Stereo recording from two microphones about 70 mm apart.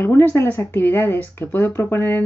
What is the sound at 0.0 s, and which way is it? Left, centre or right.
Speech, left.